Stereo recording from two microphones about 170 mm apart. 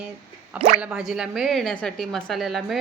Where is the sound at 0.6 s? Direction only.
40° right (ahead or behind).